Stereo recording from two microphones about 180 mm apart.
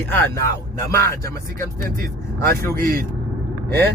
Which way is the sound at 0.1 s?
10° left (ahead or behind).